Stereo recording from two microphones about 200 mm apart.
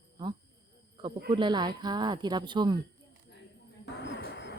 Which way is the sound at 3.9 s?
65° left (ahead or behind).